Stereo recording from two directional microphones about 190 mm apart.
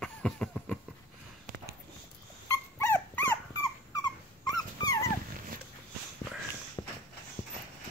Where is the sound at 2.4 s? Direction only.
15° left (ahead or behind).